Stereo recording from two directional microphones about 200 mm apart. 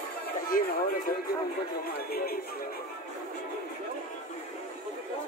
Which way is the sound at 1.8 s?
50° left (ahead or behind).